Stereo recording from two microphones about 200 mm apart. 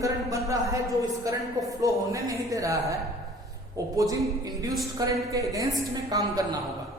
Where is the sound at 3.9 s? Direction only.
15° right (ahead or behind).